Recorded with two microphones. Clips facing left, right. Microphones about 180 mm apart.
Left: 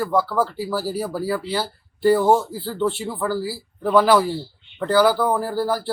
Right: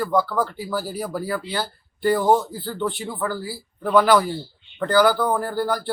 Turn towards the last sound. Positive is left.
turn(degrees=5)  # may be behind; listen again after turning